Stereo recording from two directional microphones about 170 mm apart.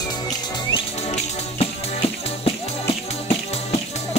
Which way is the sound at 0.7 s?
35° left (ahead or behind).